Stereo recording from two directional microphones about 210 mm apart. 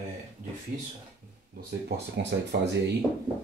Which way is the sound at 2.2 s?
55° right (ahead or behind).